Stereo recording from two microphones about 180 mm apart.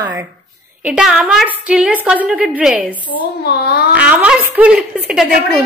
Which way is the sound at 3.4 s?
60° left (ahead or behind).